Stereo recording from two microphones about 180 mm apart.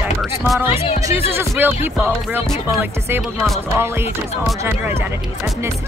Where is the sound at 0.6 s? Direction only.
35° left (ahead or behind).